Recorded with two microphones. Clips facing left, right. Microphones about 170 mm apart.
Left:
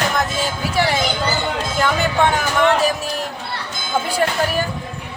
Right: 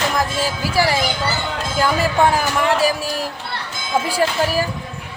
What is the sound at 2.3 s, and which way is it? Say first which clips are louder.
Speech: left 1 dB; 30° right (ahead or behind).